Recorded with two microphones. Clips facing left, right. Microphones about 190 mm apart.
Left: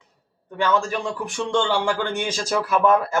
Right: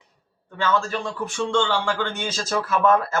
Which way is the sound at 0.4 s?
15° left (ahead or behind).